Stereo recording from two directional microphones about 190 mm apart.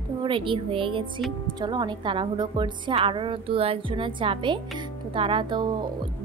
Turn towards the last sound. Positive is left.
turn(degrees=-25)  # may be behind; listen again after turning